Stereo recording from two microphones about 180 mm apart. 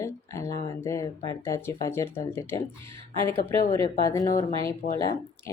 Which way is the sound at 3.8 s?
20° left (ahead or behind).